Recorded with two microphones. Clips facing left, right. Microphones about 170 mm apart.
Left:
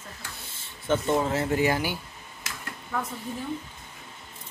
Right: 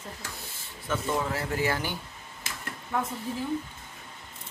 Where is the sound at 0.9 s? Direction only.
25° left (ahead or behind).